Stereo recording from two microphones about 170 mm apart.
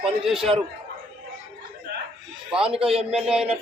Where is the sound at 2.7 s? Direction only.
35° right (ahead or behind).